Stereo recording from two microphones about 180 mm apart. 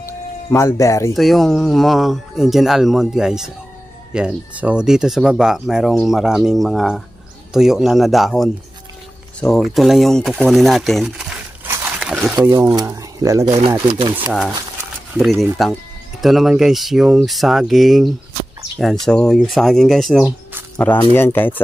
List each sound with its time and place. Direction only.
0.5 s speech: 15° left (ahead or behind)
1.1 s speech: centre (ahead or behind)
12.0 s a sound: centre (ahead or behind)
12.4 s speech: 20° right (ahead or behind)
14.1 s speech: 5° right (ahead or behind)
20.7 s speech: 5° left (ahead or behind)